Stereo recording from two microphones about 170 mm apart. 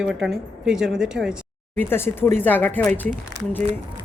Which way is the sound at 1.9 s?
15° left (ahead or behind).